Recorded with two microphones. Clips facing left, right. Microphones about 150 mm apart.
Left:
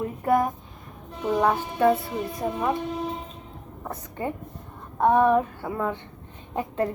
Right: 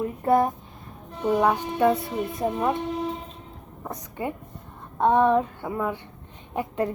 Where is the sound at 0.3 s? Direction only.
30° right (ahead or behind).